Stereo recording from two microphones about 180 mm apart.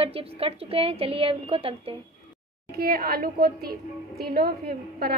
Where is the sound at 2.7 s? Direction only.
55° right (ahead or behind).